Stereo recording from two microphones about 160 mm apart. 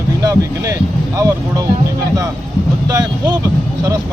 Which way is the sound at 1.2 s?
20° right (ahead or behind).